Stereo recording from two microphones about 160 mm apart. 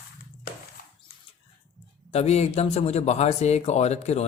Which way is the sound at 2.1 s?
40° left (ahead or behind).